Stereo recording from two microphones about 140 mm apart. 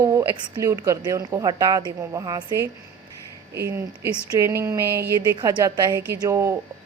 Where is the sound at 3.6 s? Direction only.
20° right (ahead or behind).